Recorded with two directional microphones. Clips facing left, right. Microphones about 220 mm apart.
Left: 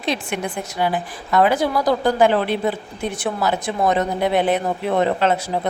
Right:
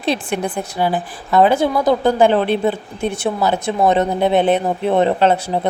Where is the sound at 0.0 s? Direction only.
35° right (ahead or behind).